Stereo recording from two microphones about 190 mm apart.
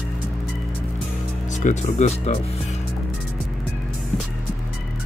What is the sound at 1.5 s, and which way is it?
Speech, 40° left (ahead or behind).